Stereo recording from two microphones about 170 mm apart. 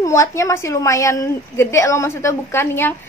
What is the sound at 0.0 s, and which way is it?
A woman's voice, 20° left (ahead or behind).